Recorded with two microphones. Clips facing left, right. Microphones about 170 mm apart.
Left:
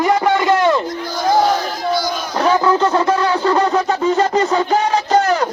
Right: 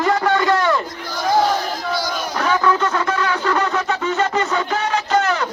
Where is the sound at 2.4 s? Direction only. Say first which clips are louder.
Left 4 dB; 30° left (ahead or behind).